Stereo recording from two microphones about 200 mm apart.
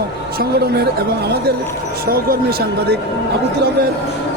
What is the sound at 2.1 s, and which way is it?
Speech, 50° right (ahead or behind).